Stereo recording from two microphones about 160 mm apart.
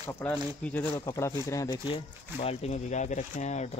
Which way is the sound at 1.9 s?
40° left (ahead or behind).